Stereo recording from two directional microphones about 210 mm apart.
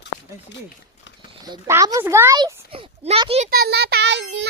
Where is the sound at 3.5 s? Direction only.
50° right (ahead or behind).